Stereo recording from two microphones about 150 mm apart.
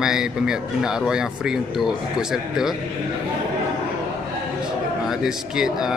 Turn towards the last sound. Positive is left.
turn(degrees=-5)  # may be behind; listen again after turning